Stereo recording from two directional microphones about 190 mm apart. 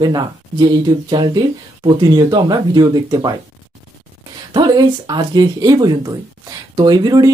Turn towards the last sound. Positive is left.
turn(degrees=-20)  # may be behind; listen again after turning